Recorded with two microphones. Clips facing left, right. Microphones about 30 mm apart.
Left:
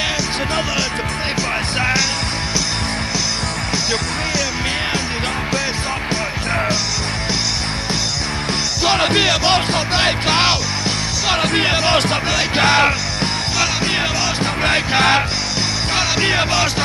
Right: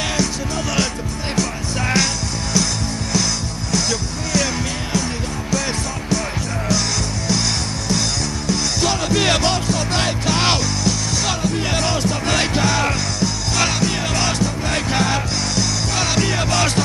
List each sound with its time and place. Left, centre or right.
8.5 s music: left
11.6 s music: left
11.9 s music: left
15.5 s music: left
16.5 s music: centre